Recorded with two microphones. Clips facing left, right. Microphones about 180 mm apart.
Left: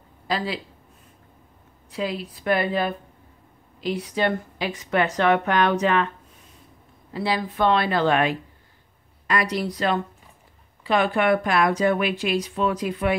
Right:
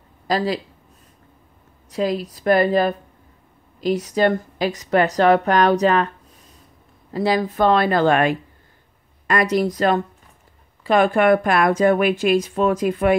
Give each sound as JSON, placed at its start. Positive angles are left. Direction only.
{"t": 0.3, "sound": "speech", "side_deg": -40}
{"t": 1.9, "sound": "a woman's voice", "side_deg": -40}
{"t": 7.1, "sound": "speech", "side_deg": -40}